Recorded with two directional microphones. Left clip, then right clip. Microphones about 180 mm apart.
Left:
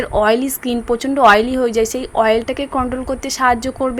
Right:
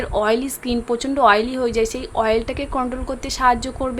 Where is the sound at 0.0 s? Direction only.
15° left (ahead or behind).